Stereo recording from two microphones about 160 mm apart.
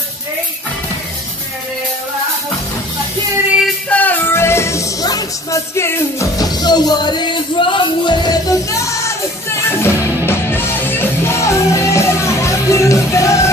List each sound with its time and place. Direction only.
3.6 s music: 10° left (ahead or behind)